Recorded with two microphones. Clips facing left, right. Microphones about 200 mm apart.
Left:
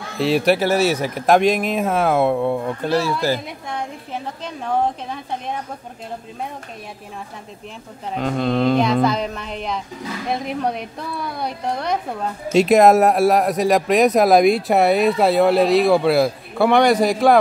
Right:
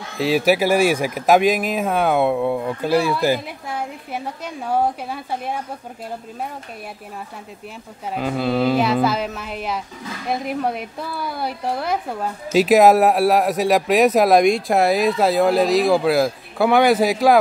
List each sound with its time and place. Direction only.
0.2 s a woman's voice: 5° right (ahead or behind)
8.1 s speech: 5° right (ahead or behind)